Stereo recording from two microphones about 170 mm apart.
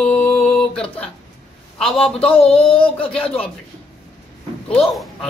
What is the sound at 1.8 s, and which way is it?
Speech, centre (ahead or behind).